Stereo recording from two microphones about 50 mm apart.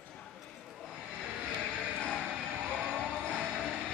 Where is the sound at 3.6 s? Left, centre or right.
Centre.